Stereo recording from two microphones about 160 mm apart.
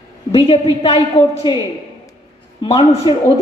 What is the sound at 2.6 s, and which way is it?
Speech, 35° left (ahead or behind).